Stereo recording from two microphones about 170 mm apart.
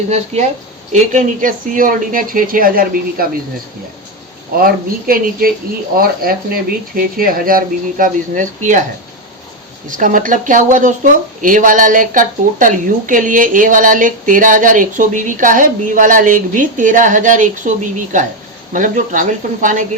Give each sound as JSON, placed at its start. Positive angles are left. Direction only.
{"t": 0.3, "sound": "speech", "side_deg": -35}
{"t": 0.9, "sound": "speech", "side_deg": -50}
{"t": 4.5, "sound": "speech", "side_deg": -60}
{"t": 10.0, "sound": "speech", "side_deg": -50}